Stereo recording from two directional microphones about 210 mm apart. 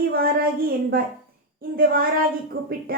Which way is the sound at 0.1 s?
45° right (ahead or behind).